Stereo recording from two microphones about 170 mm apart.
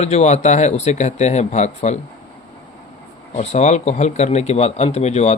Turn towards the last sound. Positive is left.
turn(degrees=40)  # may be behind; listen again after turning